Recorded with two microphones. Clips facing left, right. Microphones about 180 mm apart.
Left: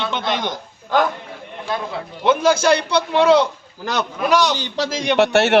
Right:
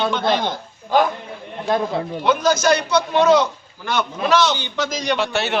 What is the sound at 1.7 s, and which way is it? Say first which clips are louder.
Speech: right 5 dB; 40° right (ahead or behind).